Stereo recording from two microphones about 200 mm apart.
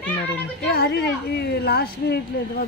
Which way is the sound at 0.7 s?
55° left (ahead or behind).